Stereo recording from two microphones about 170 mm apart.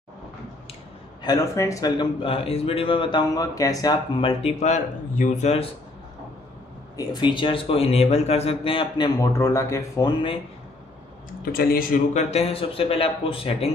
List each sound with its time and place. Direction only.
1.2 s a man's voice: 20° left (ahead or behind); by 5.7 s 40° left (ahead or behind)
7.0 s a man's voice: 25° left (ahead or behind)
11.5 s a man's voice: 60° left (ahead or behind)
12.1 s a man's voice: 40° left (ahead or behind)